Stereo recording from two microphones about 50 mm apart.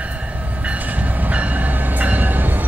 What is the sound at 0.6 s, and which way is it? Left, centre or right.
Train, right.